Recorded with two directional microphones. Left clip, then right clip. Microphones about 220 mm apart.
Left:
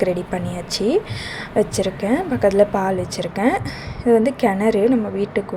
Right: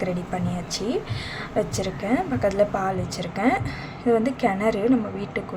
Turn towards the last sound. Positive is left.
turn(degrees=15)  # may be behind; listen again after turning